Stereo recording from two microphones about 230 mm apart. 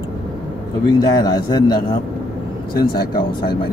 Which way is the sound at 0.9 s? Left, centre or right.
Centre.